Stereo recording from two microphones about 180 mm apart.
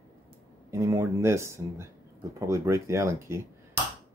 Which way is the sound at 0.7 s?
15° right (ahead or behind).